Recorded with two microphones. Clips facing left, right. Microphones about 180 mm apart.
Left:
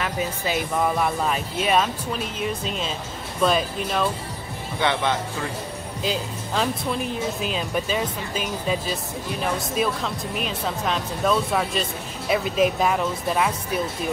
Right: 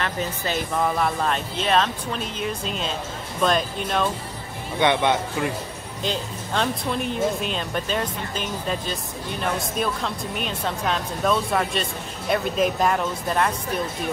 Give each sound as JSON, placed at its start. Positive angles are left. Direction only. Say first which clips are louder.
{"t": 0.0, "sound": "speech", "louder": "left 1 dB", "side_deg": 5}
{"t": 4.7, "sound": "speech", "louder": "right 3 dB", "side_deg": -20}
{"t": 6.0, "sound": "speech", "louder": "even", "side_deg": 5}